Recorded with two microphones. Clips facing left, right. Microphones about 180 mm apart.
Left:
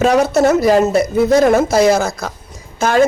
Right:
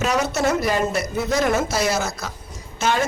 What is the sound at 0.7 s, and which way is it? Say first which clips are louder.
Speech: left 10 dB; 35° left (ahead or behind).